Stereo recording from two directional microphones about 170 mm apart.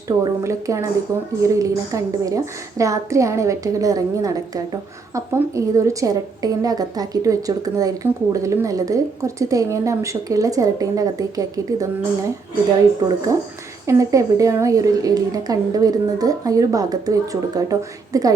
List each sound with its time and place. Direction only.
0.2 s a woman's voice: 20° right (ahead or behind)
13.8 s a woman's voice: 20° right (ahead or behind)